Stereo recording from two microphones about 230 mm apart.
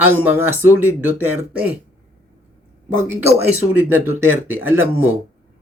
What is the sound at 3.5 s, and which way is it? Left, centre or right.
Speech, left.